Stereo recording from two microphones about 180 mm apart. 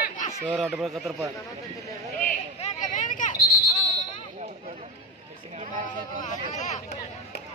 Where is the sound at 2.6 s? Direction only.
40° left (ahead or behind).